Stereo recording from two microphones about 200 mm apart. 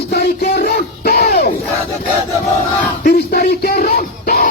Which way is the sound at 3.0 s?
50° left (ahead or behind).